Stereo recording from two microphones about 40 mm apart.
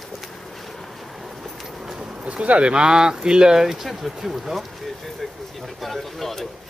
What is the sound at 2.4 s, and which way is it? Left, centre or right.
Speech, right.